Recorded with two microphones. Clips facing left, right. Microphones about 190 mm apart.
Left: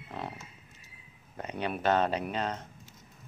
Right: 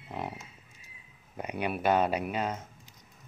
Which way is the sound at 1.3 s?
10° right (ahead or behind).